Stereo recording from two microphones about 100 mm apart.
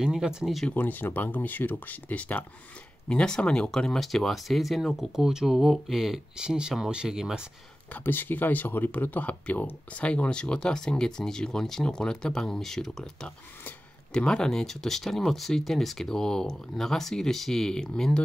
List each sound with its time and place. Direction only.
0.0 s speech: 5° right (ahead or behind)
0.7 s speech: 20° left (ahead or behind); by 7.4 s 5° right (ahead or behind)
7.9 s speech: 20° left (ahead or behind)